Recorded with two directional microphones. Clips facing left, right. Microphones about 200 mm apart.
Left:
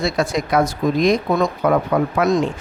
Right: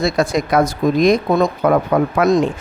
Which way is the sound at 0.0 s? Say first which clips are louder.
Right 3 dB; 40° right (ahead or behind).